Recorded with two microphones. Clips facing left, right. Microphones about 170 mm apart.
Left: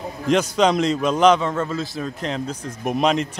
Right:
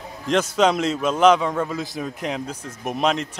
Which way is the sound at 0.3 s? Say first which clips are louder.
Left 1 dB; centre (ahead or behind).